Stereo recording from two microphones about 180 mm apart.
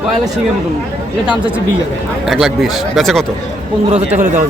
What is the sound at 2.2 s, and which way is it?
Speech, centre (ahead or behind).